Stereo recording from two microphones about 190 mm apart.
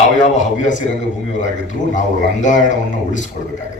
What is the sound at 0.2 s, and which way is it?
Speech, 40° left (ahead or behind).